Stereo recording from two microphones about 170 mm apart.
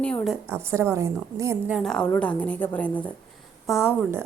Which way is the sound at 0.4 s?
15° right (ahead or behind).